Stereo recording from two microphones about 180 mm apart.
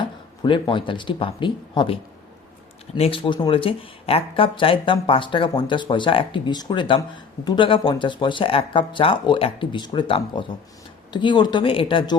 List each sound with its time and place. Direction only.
0.0 s speech: 25° left (ahead or behind)